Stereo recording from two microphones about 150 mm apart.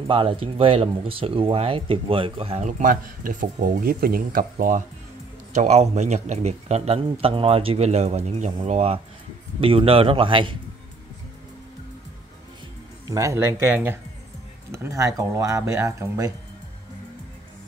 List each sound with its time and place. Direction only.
0.1 s speech: 35° right (ahead or behind)
2.8 s speech: 65° right (ahead or behind)
5.5 s speech: 50° right (ahead or behind)
13.1 s speech: 20° right (ahead or behind)